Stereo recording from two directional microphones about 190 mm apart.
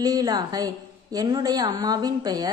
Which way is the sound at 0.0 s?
20° right (ahead or behind).